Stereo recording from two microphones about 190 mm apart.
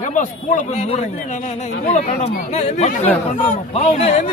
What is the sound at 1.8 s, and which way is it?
Speech, 35° left (ahead or behind).